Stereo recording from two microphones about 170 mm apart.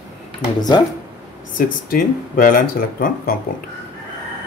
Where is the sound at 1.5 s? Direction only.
55° left (ahead or behind).